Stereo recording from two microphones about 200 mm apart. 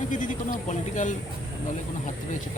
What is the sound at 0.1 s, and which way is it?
Speech, 40° left (ahead or behind).